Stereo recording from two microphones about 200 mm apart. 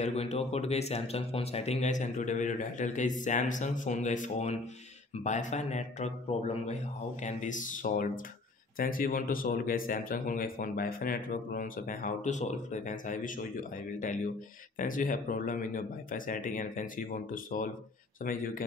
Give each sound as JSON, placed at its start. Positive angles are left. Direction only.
{"t": 0.0, "sound": "speech", "side_deg": 30}